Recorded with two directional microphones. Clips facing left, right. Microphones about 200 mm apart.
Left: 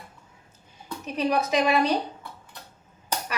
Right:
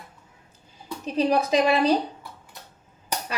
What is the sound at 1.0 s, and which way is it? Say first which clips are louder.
Speech: right 3 dB; 30° right (ahead or behind).